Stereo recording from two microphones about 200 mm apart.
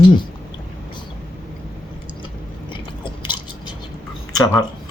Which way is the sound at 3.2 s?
25° left (ahead or behind).